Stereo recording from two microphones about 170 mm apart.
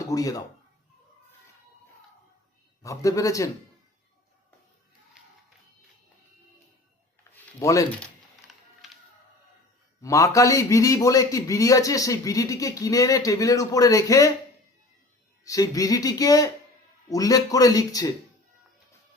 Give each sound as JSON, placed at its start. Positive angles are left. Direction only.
{"t": 0.0, "sound": "speech", "side_deg": 20}
{"t": 2.8, "sound": "a man's voice", "side_deg": 20}
{"t": 7.3, "sound": "a sound", "side_deg": 15}
{"t": 7.6, "sound": "a man's voice", "side_deg": 20}
{"t": 8.4, "sound": "music", "side_deg": 0}
{"t": 10.0, "sound": "a man's voice", "side_deg": 20}
{"t": 15.4, "sound": "a man's voice", "side_deg": 20}